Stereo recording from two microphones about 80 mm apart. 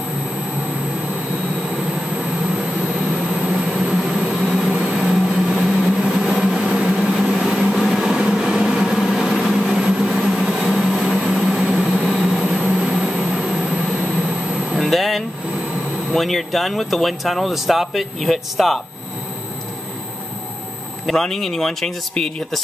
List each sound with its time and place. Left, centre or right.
3.3 s vehicle: centre
3.9 s train: centre
4.2 s vehicle: centre
4.6 s vehicle: centre
12.8 s a sound: centre
14.8 s a sound: centre
16.1 s speech: centre
21.1 s speech: centre